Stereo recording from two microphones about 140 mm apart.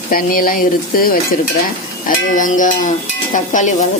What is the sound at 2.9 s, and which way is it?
Cowbell, 65° left (ahead or behind).